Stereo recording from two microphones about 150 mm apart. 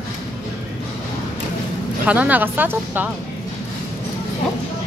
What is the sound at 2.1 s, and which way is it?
Speech, 10° right (ahead or behind).